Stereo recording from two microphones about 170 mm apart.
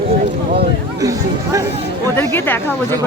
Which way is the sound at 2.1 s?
10° left (ahead or behind).